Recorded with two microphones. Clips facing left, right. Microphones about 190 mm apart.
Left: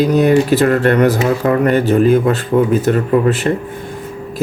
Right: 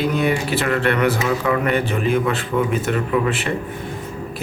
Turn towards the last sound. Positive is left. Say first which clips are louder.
# left 7 dB
turn(degrees=40)  # may be behind; listen again after turning